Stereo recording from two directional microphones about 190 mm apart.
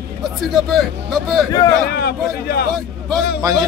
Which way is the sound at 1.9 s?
55° left (ahead or behind).